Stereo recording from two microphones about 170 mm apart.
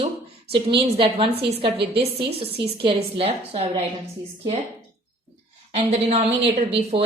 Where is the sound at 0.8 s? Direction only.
35° right (ahead or behind).